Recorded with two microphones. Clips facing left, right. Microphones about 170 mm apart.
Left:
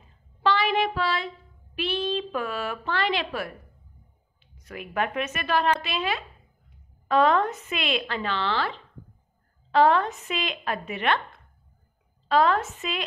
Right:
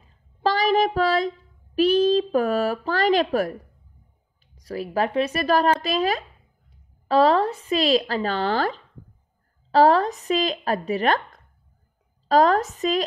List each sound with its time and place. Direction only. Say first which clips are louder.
0.4 s child singing: right 4 dB; 40° right (ahead or behind)
1.8 s a woman's voice: right 10 dB; 40° right (ahead or behind)